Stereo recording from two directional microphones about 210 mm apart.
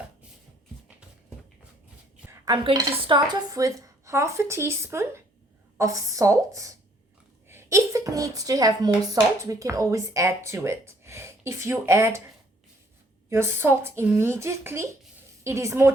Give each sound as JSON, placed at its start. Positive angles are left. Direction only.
{"t": 2.2, "sound": "speech", "side_deg": -20}
{"t": 13.3, "sound": "speech", "side_deg": -10}